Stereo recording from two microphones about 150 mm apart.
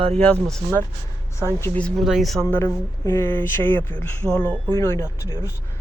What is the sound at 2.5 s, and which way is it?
Speech, 15° left (ahead or behind).